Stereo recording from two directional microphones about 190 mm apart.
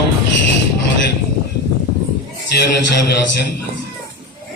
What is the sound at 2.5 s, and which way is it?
Speech, 60° left (ahead or behind).